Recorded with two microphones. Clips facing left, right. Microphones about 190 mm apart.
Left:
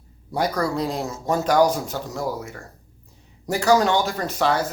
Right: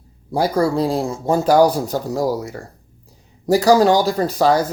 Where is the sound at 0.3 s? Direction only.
30° right (ahead or behind).